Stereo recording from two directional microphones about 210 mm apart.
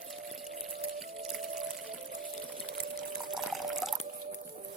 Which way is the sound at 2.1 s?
40° right (ahead or behind).